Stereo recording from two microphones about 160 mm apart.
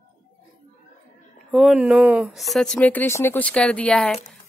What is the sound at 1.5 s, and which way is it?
Speech, centre (ahead or behind).